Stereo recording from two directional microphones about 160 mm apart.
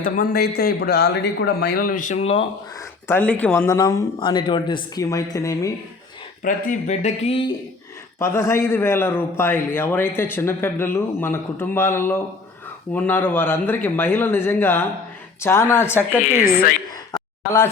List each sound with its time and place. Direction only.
0.0 s a man's voice: 60° left (ahead or behind); by 2.4 s 40° left (ahead or behind)
3.1 s speech: 10° left (ahead or behind)
6.4 s speech: 50° left (ahead or behind)
8.2 s speech: 15° left (ahead or behind)
17.1 s a sound: 20° left (ahead or behind)